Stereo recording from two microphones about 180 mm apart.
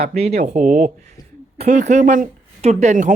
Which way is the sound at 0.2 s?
35° right (ahead or behind).